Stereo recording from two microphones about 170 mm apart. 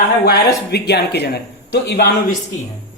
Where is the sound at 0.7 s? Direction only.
75° left (ahead or behind).